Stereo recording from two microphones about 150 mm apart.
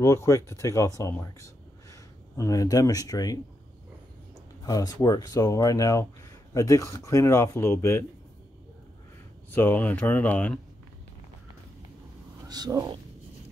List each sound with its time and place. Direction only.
0.0 s speech: 20° left (ahead or behind)
4.6 s speech: 25° left (ahead or behind)
9.5 s speech: 15° left (ahead or behind)
12.4 s speech: 25° right (ahead or behind)